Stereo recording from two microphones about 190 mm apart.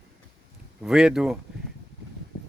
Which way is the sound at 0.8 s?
5° right (ahead or behind).